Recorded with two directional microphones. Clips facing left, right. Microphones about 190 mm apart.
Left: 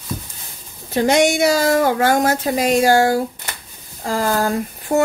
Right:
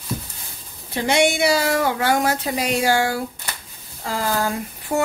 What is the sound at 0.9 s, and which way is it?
Speech, 45° left (ahead or behind).